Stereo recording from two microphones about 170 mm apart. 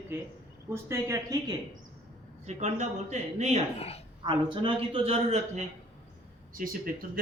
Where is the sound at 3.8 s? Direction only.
35° left (ahead or behind).